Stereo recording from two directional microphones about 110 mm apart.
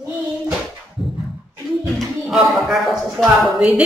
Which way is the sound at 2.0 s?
Centre (ahead or behind).